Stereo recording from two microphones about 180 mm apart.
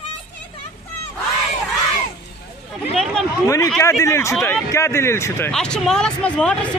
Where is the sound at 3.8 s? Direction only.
15° left (ahead or behind).